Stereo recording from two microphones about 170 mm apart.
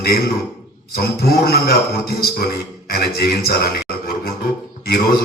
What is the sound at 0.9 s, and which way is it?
A man's voice, 65° left (ahead or behind).